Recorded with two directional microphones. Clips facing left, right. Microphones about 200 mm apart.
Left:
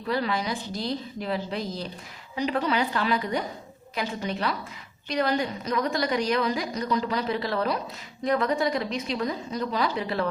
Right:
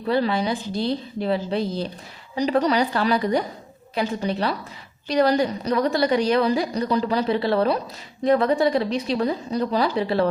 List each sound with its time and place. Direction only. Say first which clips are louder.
0.0 s a woman's voice: right 6 dB; 30° right (ahead or behind)